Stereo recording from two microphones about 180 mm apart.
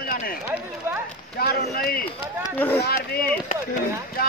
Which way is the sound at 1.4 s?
60° left (ahead or behind).